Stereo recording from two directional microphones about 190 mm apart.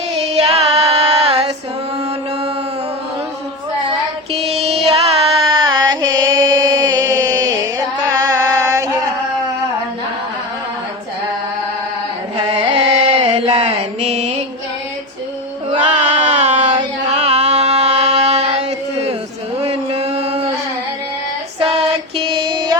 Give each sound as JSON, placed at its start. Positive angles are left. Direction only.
{"t": 0.3, "sound": "music", "side_deg": -30}
{"t": 4.3, "sound": "music", "side_deg": -30}
{"t": 12.7, "sound": "carnatic music", "side_deg": -35}
{"t": 13.6, "sound": "mantra", "side_deg": -35}
{"t": 16.0, "sound": "a sound", "side_deg": -40}
{"t": 19.6, "sound": "music", "side_deg": -30}
{"t": 22.2, "sound": "female singing", "side_deg": -25}